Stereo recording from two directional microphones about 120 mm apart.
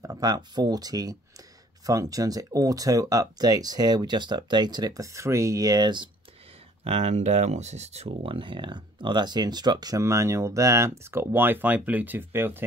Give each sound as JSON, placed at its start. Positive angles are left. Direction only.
{"t": 0.0, "sound": "speech", "side_deg": -30}
{"t": 6.8, "sound": "speech", "side_deg": -60}